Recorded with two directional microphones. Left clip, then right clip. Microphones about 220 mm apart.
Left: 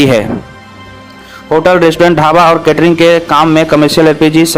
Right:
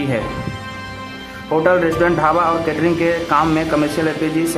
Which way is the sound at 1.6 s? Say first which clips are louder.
Left 8 dB; 45° left (ahead or behind).